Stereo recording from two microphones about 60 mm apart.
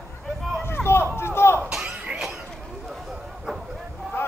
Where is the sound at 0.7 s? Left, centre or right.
Left.